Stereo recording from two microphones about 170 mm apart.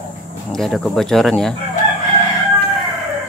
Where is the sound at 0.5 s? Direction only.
Centre (ahead or behind).